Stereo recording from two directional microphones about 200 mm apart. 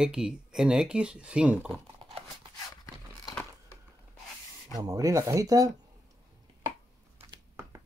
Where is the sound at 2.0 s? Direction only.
25° right (ahead or behind).